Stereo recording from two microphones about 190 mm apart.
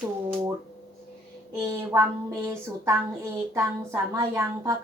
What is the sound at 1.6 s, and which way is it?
Speech, 15° right (ahead or behind).